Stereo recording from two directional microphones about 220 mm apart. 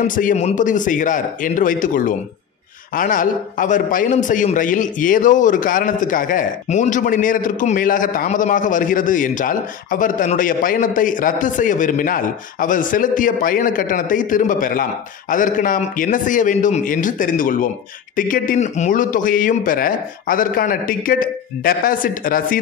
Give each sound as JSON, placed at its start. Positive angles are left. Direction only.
{"t": 0.0, "sound": "a man's voice", "side_deg": 35}